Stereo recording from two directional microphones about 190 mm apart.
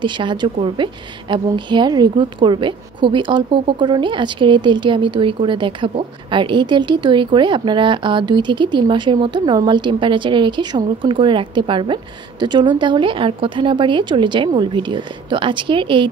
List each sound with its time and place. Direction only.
0.0 s a woman's voice: 25° right (ahead or behind)